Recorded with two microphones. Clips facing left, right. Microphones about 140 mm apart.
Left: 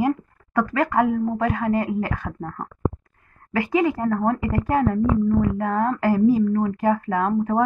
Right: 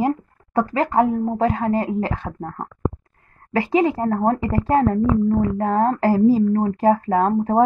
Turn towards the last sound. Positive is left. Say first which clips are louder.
# right 4 dB
turn(degrees=-35)  # may be behind; listen again after turning